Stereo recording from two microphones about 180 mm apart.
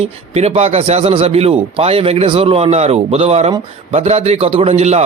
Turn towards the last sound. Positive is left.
turn(degrees=-35)  # may be behind; listen again after turning